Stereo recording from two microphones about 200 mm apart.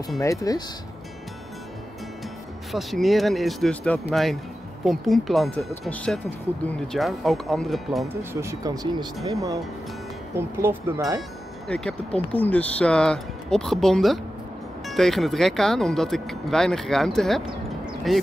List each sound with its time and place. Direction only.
0.2 s speech: 15° left (ahead or behind)
2.7 s speech: centre (ahead or behind)
8.1 s speech: 10° right (ahead or behind)
11.6 s speech: 5° left (ahead or behind)